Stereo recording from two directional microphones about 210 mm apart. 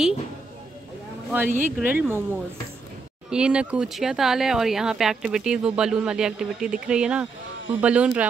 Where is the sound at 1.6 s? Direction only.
10° right (ahead or behind).